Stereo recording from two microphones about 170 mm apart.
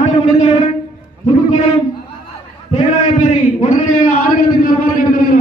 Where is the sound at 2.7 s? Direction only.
40° left (ahead or behind).